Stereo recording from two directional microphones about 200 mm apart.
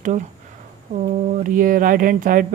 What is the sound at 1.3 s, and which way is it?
Speech, 40° right (ahead or behind).